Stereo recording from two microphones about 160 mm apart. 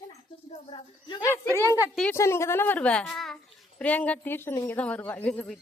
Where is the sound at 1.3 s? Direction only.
15° left (ahead or behind).